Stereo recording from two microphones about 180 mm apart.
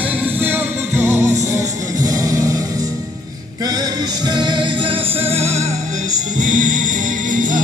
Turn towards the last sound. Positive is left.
turn(degrees=-45)  # may be behind; listen again after turning